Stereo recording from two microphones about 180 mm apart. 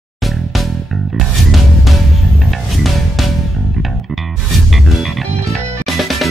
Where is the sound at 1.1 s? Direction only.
Centre (ahead or behind).